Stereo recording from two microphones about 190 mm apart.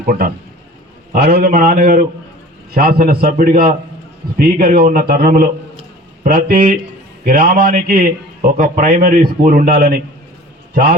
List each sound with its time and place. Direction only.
0.1 s a man's voice: 45° right (ahead or behind)